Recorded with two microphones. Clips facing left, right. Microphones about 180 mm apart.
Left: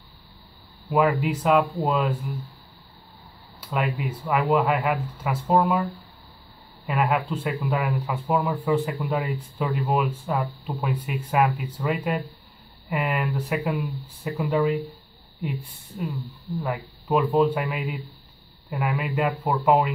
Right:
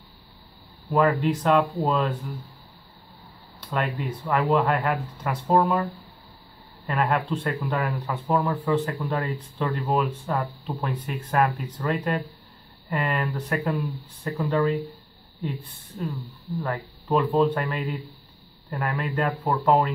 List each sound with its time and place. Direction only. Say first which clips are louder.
0.8 s speech: even; 5° left (ahead or behind)
3.6 s speech: left 1 dB; centre (ahead or behind)
6.9 s speech: even; centre (ahead or behind)
14.4 s speech: even; 15° left (ahead or behind)
16.6 s speech: even; 10° left (ahead or behind)